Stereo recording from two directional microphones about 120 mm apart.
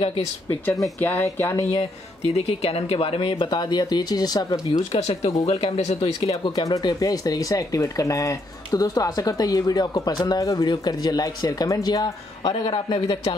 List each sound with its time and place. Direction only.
0.0 s speech: 45° left (ahead or behind)
1.0 s speech: 20° left (ahead or behind)
1.8 s speech: 60° left (ahead or behind); by 4.8 s 35° left (ahead or behind)
4.9 s speech: 60° left (ahead or behind)
6.4 s speech: 30° left (ahead or behind)
12.6 s speech: 45° left (ahead or behind)